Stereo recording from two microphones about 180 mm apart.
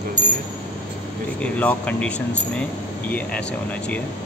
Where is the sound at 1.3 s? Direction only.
10° left (ahead or behind).